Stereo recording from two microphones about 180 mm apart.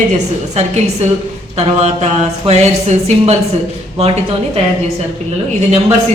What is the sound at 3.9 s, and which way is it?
Speech, 35° right (ahead or behind).